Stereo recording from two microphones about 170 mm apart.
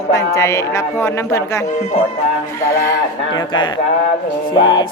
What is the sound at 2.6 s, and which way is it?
A man's voice, 15° left (ahead or behind).